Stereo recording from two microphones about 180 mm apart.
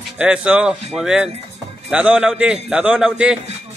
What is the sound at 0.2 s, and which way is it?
Speech, 5° right (ahead or behind).